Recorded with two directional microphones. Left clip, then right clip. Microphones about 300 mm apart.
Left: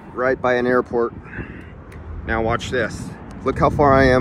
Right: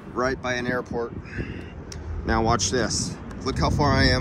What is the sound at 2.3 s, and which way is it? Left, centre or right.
A man's voice, centre.